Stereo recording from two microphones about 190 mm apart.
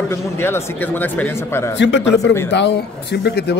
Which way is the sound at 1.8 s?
70° left (ahead or behind).